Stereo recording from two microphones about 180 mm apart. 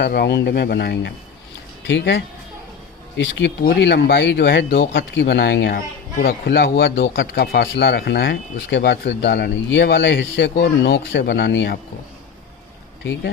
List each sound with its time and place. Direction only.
0.0 s speech: 65° left (ahead or behind)
1.8 s speech: 85° left
3.2 s speech: 90° left
3.6 s speech: 60° left (ahead or behind); by 7.4 s 90° left
7.4 s speech: 60° left (ahead or behind); by 11.8 s 80° left